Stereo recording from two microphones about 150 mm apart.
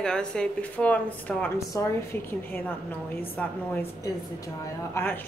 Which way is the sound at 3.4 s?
10° left (ahead or behind).